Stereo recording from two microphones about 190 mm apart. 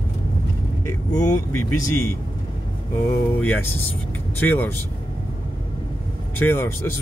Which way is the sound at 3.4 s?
10° left (ahead or behind).